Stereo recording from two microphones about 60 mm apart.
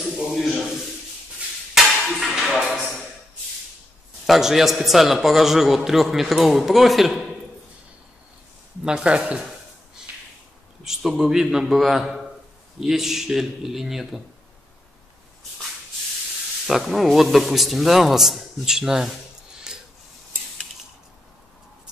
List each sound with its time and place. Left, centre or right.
0.3 s a man's voice: centre
1.8 s a sound: centre
4.3 s a man's voice: centre
8.8 s a man's voice: centre
11.1 s a man's voice: centre
16.6 s a man's voice: centre
19.5 s a sound: centre